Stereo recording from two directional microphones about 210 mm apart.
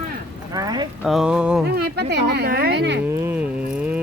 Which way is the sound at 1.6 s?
50° right (ahead or behind).